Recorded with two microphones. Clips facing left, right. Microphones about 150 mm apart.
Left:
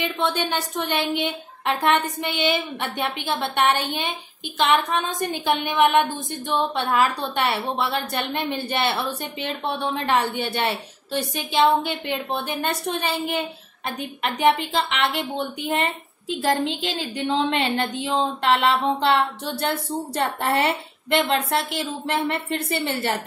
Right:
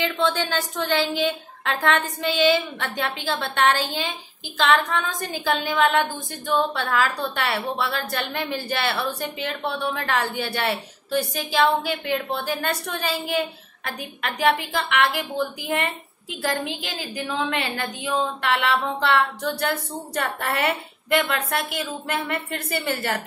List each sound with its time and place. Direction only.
0.0 s a woman's voice: 20° left (ahead or behind)